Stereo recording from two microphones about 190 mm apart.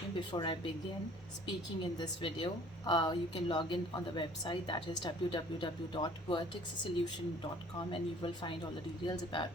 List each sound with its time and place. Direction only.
0.2 s a woman's voice: 25° left (ahead or behind)
7.9 s a woman's voice: 25° left (ahead or behind)